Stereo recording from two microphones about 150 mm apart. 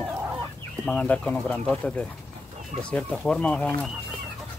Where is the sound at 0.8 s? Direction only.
10° left (ahead or behind).